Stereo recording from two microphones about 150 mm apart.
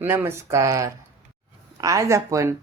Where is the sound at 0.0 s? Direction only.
15° right (ahead or behind).